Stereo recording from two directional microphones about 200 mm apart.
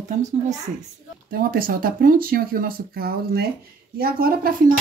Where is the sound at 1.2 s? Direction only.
45° right (ahead or behind).